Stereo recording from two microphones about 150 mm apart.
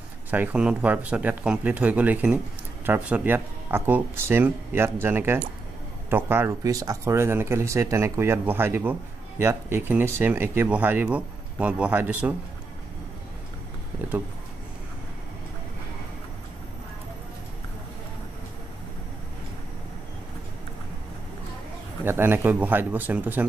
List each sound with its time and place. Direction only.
0.3 s speech: 10° right (ahead or behind)
22.0 s speech: 15° right (ahead or behind)